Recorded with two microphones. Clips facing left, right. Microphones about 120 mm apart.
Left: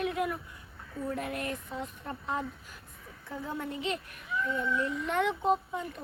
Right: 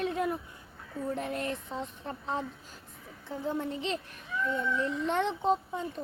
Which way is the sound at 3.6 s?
30° right (ahead or behind).